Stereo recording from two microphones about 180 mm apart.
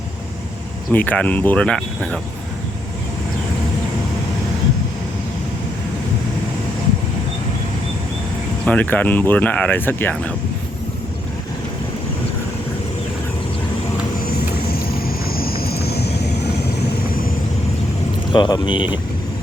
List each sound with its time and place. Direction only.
0.9 s speech: 10° left (ahead or behind)
8.6 s speech: 10° left (ahead or behind)
14.3 s a sound: 55° left (ahead or behind)
15.3 s vehicle: 55° left (ahead or behind)
18.3 s speech: 25° left (ahead or behind)